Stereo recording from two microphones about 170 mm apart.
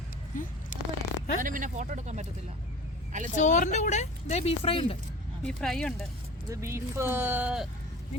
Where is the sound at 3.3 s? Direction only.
45° left (ahead or behind).